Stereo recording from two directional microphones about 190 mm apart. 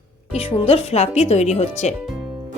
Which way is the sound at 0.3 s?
30° left (ahead or behind).